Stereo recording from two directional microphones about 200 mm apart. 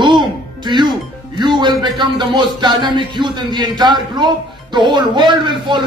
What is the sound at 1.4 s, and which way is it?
A man's voice, 20° right (ahead or behind).